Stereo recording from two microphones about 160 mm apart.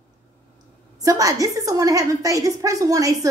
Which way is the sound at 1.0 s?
20° right (ahead or behind).